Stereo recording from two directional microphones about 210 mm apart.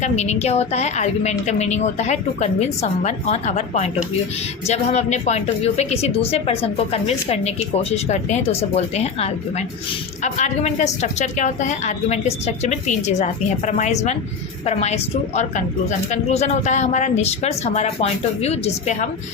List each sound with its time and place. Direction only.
0.0 s speech: 30° left (ahead or behind)